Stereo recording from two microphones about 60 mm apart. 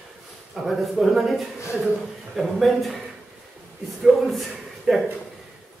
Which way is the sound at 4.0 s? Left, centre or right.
Centre.